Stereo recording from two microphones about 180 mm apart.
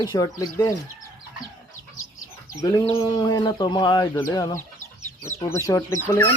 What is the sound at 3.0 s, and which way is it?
Speech, 25° left (ahead or behind).